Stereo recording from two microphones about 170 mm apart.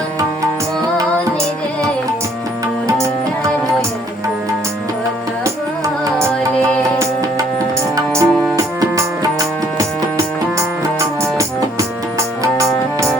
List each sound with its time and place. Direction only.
7.9 s music: 20° right (ahead or behind)
10.8 s music: 20° right (ahead or behind)